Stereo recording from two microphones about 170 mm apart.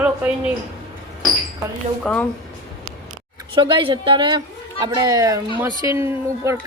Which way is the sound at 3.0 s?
25° right (ahead or behind).